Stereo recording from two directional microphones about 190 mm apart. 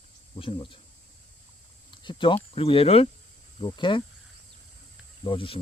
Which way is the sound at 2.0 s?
25° left (ahead or behind).